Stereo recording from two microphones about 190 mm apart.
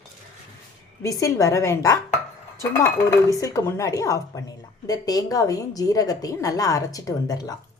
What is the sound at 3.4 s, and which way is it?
A woman's voice, 15° left (ahead or behind).